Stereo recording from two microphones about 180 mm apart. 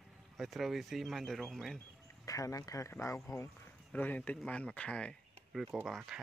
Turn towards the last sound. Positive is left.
turn(degrees=0)  # may be behind; listen again after turning